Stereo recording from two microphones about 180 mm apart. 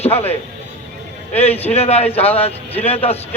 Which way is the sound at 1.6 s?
35° left (ahead or behind).